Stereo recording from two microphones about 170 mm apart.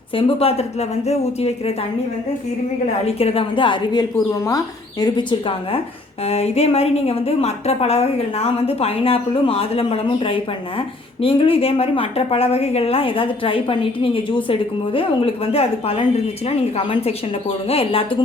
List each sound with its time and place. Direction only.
0.2 s speech: 35° left (ahead or behind)
3.2 s speech: 35° left (ahead or behind)